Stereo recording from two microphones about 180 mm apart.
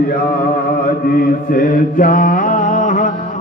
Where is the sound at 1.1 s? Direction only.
55° left (ahead or behind).